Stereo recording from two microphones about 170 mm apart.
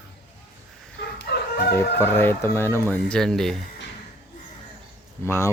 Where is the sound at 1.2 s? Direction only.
75° left (ahead or behind).